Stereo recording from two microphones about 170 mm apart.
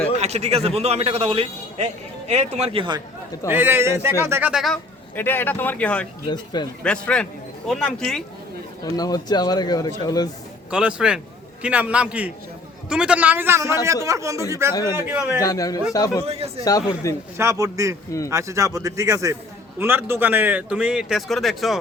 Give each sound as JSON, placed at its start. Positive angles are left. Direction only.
{"t": 0.2, "sound": "a man's voice", "side_deg": -40}
{"t": 3.4, "sound": "speech", "side_deg": -10}
{"t": 5.1, "sound": "speech", "side_deg": 10}
{"t": 6.2, "sound": "speech", "side_deg": 25}
{"t": 6.8, "sound": "speech", "side_deg": 5}
{"t": 8.8, "sound": "speech", "side_deg": 20}
{"t": 10.7, "sound": "speech", "side_deg": -5}
{"t": 15.4, "sound": "speech", "side_deg": 20}
{"t": 16.2, "sound": "a man's voice", "side_deg": -35}
{"t": 16.6, "sound": "speech", "side_deg": 20}
{"t": 17.3, "sound": "speech", "side_deg": -15}